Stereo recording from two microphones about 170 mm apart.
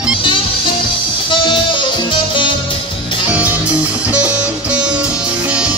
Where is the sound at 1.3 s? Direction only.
30° left (ahead or behind).